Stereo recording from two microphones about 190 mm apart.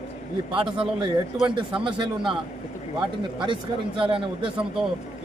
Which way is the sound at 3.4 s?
25° right (ahead or behind).